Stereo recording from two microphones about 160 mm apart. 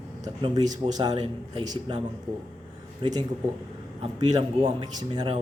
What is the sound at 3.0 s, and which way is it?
Speech, 25° right (ahead or behind).